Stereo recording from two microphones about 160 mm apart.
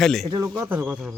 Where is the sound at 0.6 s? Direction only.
10° right (ahead or behind).